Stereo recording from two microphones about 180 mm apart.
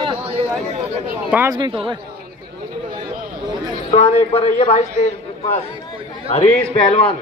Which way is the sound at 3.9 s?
40° left (ahead or behind).